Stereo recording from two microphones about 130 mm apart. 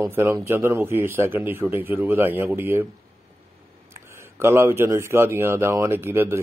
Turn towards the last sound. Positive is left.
turn(degrees=-20)  # may be behind; listen again after turning